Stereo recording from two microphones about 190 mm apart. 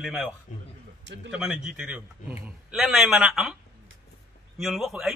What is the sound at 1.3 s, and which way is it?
A man's voice, 5° right (ahead or behind).